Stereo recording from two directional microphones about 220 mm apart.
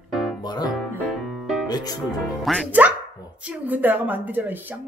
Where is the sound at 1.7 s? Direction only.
20° left (ahead or behind).